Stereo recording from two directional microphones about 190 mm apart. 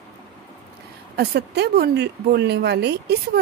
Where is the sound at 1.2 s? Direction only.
60° right (ahead or behind).